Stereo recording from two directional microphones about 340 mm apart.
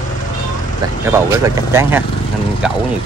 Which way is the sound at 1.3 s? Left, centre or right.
Centre.